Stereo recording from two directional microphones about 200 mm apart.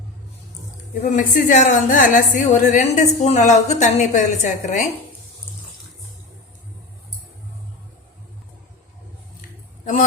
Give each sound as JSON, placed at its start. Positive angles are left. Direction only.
{"t": 1.0, "sound": "a woman's voice", "side_deg": 40}